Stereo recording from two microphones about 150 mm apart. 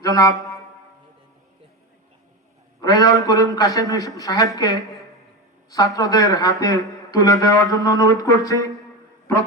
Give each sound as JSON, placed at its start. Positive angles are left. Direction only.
{"t": 0.0, "sound": "wind instrument", "side_deg": 25}
{"t": 2.8, "sound": "speech", "side_deg": 25}